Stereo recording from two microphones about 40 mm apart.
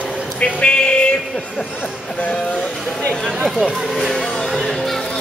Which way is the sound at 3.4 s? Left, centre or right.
Centre.